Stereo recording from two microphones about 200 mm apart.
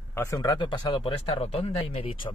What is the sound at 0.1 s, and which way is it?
Speech, 15° left (ahead or behind).